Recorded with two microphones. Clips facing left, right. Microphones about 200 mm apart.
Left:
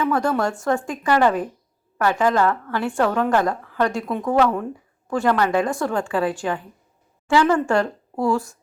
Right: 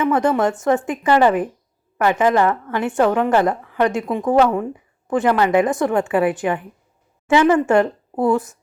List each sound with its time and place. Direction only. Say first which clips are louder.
0.0 s a woman's voice: right 4 dB; 20° right (ahead or behind)